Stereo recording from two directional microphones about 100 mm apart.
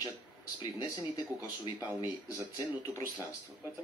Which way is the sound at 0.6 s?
50° left (ahead or behind).